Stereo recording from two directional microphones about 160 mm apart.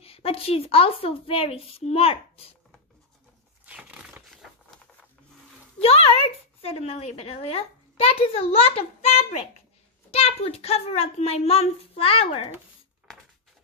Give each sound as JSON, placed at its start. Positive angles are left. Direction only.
{"t": 0.0, "sound": "a woman's voice", "side_deg": 35}
{"t": 3.6, "sound": "a sound", "side_deg": -10}
{"t": 5.8, "sound": "a woman's voice", "side_deg": 40}